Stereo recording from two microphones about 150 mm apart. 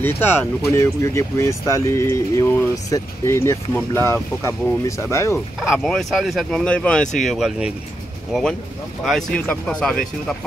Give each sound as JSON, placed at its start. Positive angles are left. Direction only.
{"t": 0.0, "sound": "speech", "side_deg": 15}
{"t": 5.6, "sound": "speech", "side_deg": 0}